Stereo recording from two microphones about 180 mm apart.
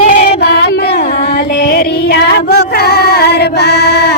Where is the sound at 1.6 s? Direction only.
60° left (ahead or behind).